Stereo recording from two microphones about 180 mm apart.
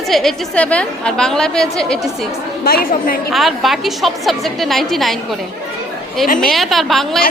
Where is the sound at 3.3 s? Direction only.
Centre (ahead or behind).